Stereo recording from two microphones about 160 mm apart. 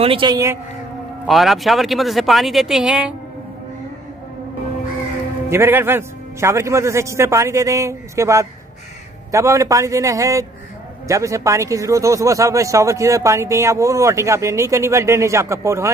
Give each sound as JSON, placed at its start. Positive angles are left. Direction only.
{"t": 0.0, "sound": "speech", "side_deg": -30}
{"t": 1.2, "sound": "speech", "side_deg": 0}
{"t": 5.5, "sound": "a man's voice", "side_deg": -15}